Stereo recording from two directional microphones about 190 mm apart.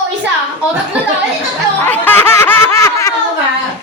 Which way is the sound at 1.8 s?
10° left (ahead or behind).